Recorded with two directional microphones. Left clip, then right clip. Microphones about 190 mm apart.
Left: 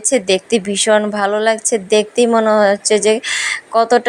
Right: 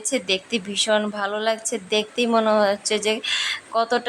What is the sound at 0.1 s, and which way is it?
A woman's voice, 25° left (ahead or behind).